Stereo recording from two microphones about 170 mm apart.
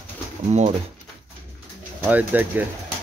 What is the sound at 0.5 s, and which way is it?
Speech, 40° right (ahead or behind).